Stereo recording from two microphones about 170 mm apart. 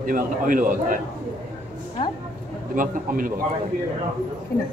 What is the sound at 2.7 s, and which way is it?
Speech, 50° right (ahead or behind).